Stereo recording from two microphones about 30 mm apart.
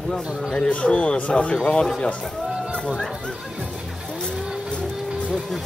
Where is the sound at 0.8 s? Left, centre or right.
Left.